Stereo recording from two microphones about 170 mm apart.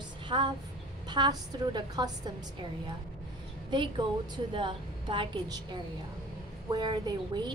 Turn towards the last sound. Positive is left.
turn(degrees=-25)  # may be behind; listen again after turning